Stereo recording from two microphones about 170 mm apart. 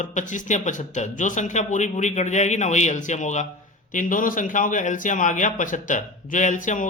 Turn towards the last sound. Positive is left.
turn(degrees=50)  # may be behind; listen again after turning